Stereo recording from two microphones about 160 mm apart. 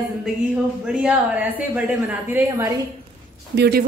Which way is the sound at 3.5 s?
90° right.